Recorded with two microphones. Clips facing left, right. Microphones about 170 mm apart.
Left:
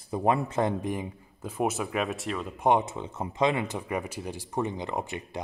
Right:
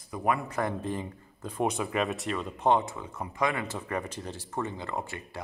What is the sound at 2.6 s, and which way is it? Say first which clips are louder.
A man's voice: left 2 dB; 20° left (ahead or behind).